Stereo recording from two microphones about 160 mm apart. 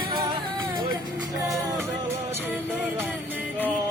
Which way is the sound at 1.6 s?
15° right (ahead or behind).